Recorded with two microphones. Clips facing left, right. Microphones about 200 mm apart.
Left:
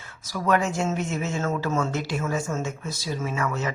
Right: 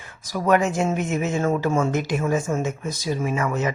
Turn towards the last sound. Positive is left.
turn(degrees=-15)  # may be behind; listen again after turning